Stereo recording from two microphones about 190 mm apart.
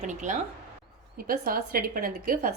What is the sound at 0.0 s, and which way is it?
Speech, 40° right (ahead or behind).